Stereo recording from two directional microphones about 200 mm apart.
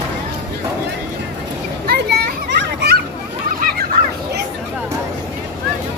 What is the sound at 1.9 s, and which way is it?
Children playing, 50° right (ahead or behind).